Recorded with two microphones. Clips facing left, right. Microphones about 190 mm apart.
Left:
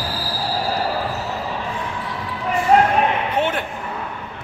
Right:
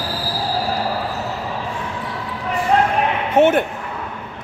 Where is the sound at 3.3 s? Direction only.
45° right (ahead or behind).